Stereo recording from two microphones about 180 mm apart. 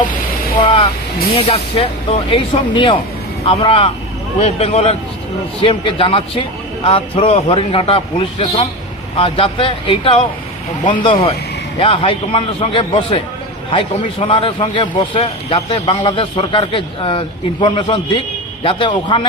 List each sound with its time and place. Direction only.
0.5 s a man's voice: 30° left (ahead or behind)